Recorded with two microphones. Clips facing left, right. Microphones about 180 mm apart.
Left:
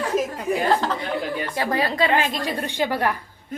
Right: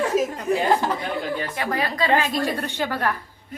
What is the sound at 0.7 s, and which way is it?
Speech, 10° right (ahead or behind).